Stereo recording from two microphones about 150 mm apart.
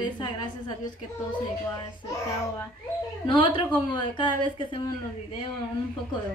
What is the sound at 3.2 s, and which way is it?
A woman's voice, 35° left (ahead or behind).